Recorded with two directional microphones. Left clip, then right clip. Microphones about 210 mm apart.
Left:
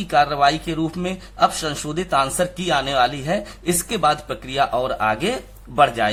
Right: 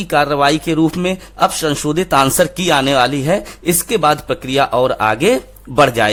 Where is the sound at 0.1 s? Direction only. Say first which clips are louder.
Right 3 dB; 35° right (ahead or behind).